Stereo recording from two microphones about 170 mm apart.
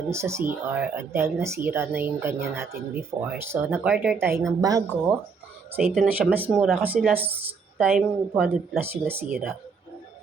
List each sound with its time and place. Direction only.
0.1 s speech: 15° right (ahead or behind)
4.4 s a woman's voice: 20° right (ahead or behind)
6.0 s speech: 10° right (ahead or behind)
9.3 s speech: centre (ahead or behind)